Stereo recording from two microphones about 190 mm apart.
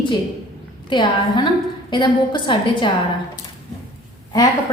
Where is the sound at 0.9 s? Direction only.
25° left (ahead or behind).